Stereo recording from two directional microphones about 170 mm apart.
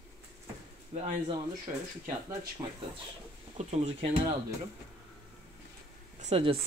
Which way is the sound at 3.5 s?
40° right (ahead or behind).